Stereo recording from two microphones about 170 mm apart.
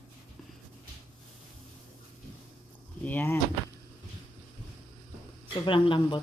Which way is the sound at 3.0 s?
10° left (ahead or behind).